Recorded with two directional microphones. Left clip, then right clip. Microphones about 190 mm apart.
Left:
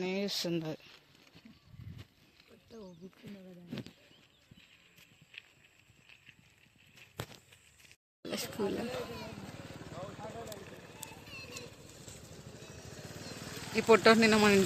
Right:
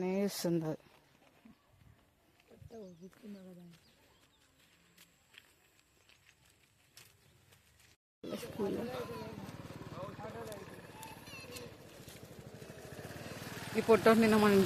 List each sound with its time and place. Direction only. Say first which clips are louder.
0.0 s a sound: even; 15° right (ahead or behind)
0.3 s speech: left 1 dB; 25° right (ahead or behind)
8.3 s speech: left 3 dB; 5° right (ahead or behind)
10.2 s a sound: left 1 dB; 35° right (ahead or behind)
11.0 s vehicle: left 2 dB; 35° right (ahead or behind)
13.7 s speech: left 3 dB; centre (ahead or behind)